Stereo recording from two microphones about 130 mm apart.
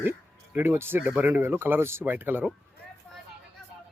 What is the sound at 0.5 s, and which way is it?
Speech, 20° right (ahead or behind).